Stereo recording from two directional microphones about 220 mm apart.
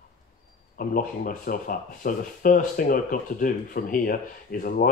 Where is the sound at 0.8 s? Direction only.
40° left (ahead or behind).